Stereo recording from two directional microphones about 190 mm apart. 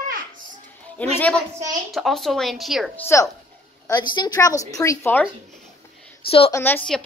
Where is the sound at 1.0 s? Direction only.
10° left (ahead or behind).